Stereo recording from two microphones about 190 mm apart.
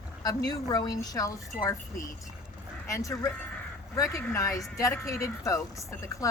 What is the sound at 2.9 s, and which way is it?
Speech, 15° left (ahead or behind).